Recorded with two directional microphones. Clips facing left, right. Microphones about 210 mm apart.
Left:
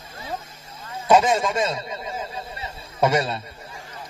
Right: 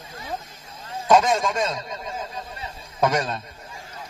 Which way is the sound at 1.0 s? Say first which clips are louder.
Left 1 dB; 10° left (ahead or behind).